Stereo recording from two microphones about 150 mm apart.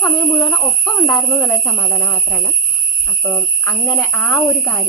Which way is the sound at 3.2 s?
5° left (ahead or behind).